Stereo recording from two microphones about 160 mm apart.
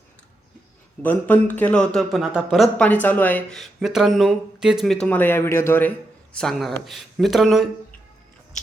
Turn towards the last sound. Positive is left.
turn(degrees=0)  # may be behind; listen again after turning